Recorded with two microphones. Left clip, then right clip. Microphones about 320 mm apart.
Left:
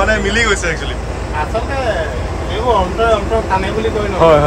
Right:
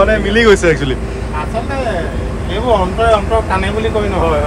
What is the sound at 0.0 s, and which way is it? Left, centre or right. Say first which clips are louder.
Speech: right 3 dB; centre.